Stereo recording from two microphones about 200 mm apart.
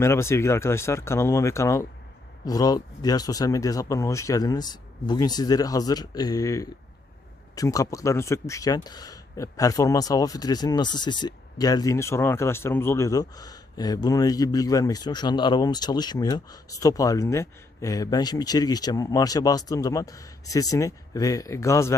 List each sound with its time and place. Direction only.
0.0 s speech: 15° left (ahead or behind)